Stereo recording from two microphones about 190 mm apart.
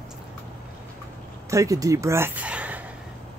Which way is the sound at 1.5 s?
15° right (ahead or behind).